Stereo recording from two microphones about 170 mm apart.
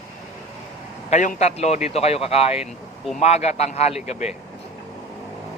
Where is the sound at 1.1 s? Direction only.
45° left (ahead or behind).